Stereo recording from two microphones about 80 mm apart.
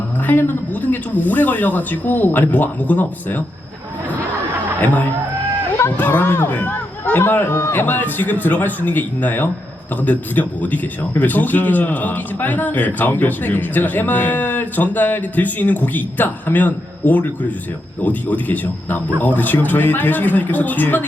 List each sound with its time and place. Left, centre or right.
0.3 s a man's voice: left
6.0 s a man's voice: left